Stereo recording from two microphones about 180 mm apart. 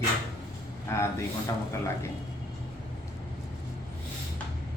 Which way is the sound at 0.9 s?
15° left (ahead or behind).